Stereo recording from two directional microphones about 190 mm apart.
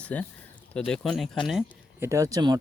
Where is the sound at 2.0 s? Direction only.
15° right (ahead or behind).